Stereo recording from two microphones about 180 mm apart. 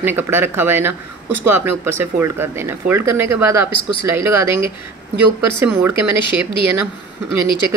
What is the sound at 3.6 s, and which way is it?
Speech, 25° left (ahead or behind).